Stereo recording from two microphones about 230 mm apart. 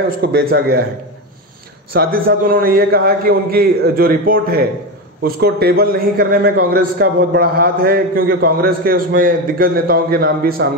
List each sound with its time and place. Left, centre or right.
0.2 s a man's voice: right
2.0 s a man's voice: right